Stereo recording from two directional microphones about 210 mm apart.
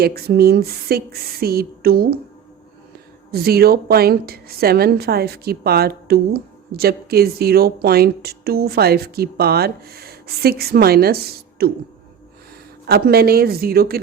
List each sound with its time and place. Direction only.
0.0 s a woman's voice: 45° right (ahead or behind)
3.3 s a woman's voice: 45° right (ahead or behind)
12.8 s a woman's voice: 50° right (ahead or behind)